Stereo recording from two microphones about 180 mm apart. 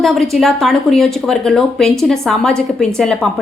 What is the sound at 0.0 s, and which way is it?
A woman's voice, centre (ahead or behind).